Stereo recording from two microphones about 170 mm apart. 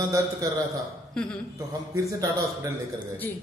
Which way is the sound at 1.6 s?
20° right (ahead or behind).